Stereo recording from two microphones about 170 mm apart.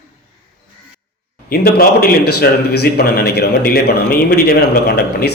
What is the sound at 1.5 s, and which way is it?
Speech, 60° left (ahead or behind).